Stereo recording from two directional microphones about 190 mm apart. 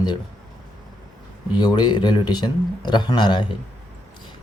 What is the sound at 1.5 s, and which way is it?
Speech, 25° left (ahead or behind).